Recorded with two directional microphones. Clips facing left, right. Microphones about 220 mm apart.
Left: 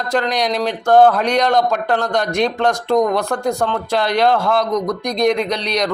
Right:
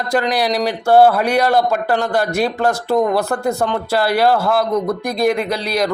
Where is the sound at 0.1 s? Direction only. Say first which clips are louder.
Right 1 dB; 5° right (ahead or behind).